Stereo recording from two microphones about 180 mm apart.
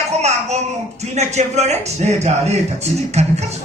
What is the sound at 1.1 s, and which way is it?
Speech, 40° right (ahead or behind).